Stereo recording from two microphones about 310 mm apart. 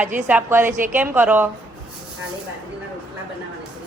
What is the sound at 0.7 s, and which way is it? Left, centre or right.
Speech, right.